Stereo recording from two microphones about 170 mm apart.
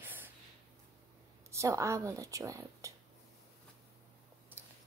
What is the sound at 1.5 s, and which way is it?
Speech, 15° right (ahead or behind).